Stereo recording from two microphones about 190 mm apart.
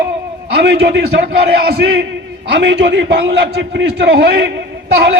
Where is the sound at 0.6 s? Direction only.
65° right (ahead or behind).